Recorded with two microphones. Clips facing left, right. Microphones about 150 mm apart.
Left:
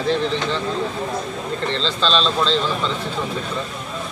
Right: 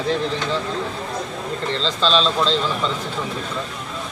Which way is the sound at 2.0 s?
10° right (ahead or behind).